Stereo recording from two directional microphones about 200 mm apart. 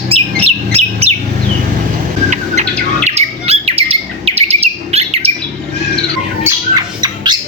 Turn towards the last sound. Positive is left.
turn(degrees=-20)  # may be behind; listen again after turning